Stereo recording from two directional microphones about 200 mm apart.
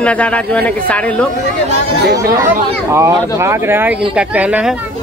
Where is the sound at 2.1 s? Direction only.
15° right (ahead or behind).